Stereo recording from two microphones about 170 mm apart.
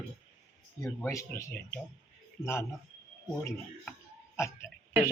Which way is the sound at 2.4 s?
15° left (ahead or behind).